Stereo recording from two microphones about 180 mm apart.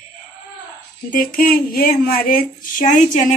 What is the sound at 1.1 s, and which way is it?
Speech, 50° left (ahead or behind).